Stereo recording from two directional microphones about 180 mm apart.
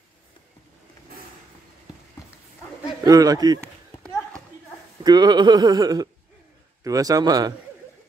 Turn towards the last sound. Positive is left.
turn(degrees=-20)  # may be behind; listen again after turning